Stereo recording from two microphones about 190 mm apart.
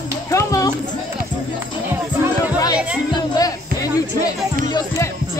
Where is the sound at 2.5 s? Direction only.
20° left (ahead or behind).